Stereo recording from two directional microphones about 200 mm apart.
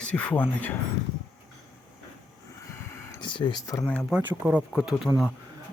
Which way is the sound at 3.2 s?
25° left (ahead or behind).